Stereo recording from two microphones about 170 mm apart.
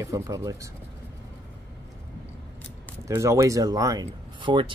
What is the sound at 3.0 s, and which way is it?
Speech, 15° right (ahead or behind).